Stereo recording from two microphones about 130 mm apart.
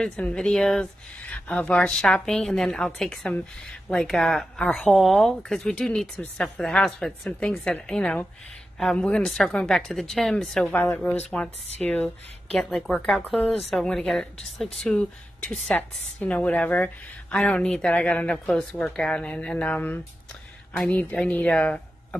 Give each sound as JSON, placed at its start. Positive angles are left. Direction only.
{"t": 0.0, "sound": "a woman's voice", "side_deg": 10}
{"t": 11.2, "sound": "a woman's voice", "side_deg": 5}
{"t": 12.4, "sound": "a woman's voice", "side_deg": 0}